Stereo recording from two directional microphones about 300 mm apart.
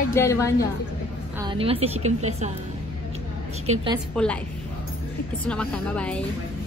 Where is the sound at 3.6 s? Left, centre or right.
Centre.